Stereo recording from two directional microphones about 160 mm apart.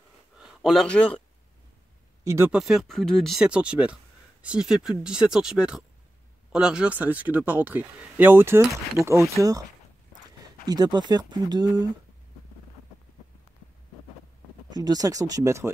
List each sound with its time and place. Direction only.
0.4 s speech: 5° right (ahead or behind)
2.2 s speech: 15° right (ahead or behind)
2.5 s speech: centre (ahead or behind); by 11.9 s 25° right (ahead or behind)
14.7 s speech: 25° right (ahead or behind)